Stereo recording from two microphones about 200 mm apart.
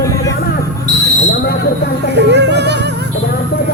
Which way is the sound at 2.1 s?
60° right (ahead or behind).